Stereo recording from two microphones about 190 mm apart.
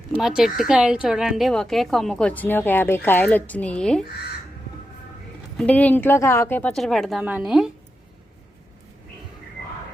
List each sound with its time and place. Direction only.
0.2 s speech: centre (ahead or behind)
5.5 s speech: 5° left (ahead or behind)